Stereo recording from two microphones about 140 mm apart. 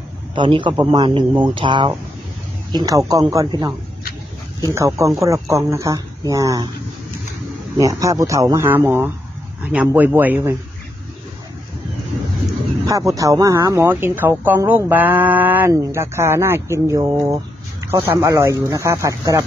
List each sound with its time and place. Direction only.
0.3 s speech: 35° right (ahead or behind)
4.7 s speech: 20° right (ahead or behind)
7.7 s speech: 25° right (ahead or behind)
12.8 s speech: 25° right (ahead or behind)